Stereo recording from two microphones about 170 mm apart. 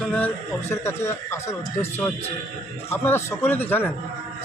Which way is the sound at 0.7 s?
15° left (ahead or behind).